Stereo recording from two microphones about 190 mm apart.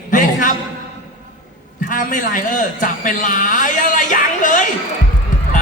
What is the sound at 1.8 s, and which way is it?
A man's voice, 45° left (ahead or behind).